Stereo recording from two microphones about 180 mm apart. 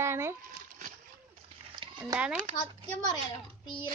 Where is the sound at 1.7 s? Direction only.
25° right (ahead or behind).